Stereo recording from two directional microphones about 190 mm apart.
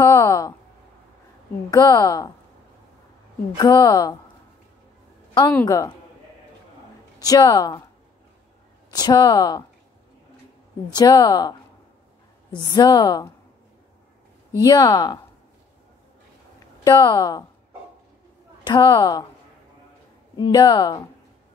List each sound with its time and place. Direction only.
0.0 s a sound: 15° left (ahead or behind)
1.7 s a woman's voice: 20° left (ahead or behind)
3.5 s a woman's voice: 20° left (ahead or behind)
5.5 s a woman's voice: 15° left (ahead or behind)
7.2 s a woman's voice: 20° left (ahead or behind)
8.9 s a woman's voice: 20° left (ahead or behind)
11.0 s a woman's voice: 20° left (ahead or behind)
12.5 s a woman's voice: 20° left (ahead or behind)
14.6 s a woman's voice: 20° left (ahead or behind)
16.8 s a woman's voice: 20° left (ahead or behind)
18.6 s a woman's voice: 20° left (ahead or behind)
20.3 s a woman's voice: 20° left (ahead or behind)